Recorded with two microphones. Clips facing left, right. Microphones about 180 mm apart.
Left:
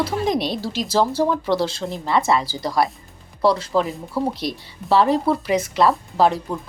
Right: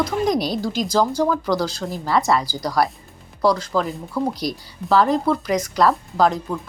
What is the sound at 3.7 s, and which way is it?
Speech, centre (ahead or behind).